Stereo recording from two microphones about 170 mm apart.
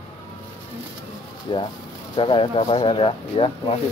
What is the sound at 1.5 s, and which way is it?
Speech, 30° left (ahead or behind).